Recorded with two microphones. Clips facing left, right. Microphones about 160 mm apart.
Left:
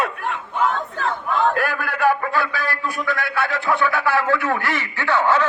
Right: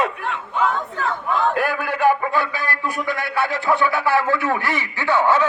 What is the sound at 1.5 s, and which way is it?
A man's voice, 10° right (ahead or behind).